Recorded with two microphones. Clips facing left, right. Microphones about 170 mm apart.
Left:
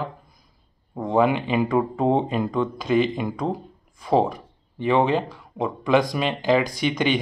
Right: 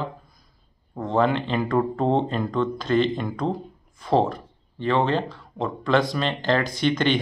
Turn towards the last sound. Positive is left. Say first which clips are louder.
# right 1 dB
turn(degrees=10)  # may be behind; listen again after turning